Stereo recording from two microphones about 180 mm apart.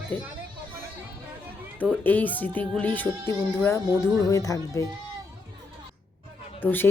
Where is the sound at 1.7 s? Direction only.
10° left (ahead or behind).